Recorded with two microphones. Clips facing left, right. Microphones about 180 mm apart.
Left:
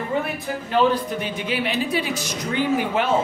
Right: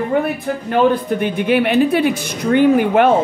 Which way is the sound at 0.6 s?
55° right (ahead or behind).